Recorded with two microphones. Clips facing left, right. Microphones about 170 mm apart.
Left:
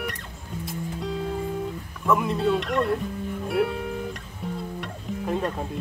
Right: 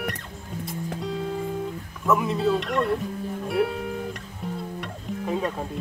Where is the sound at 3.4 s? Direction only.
Centre (ahead or behind).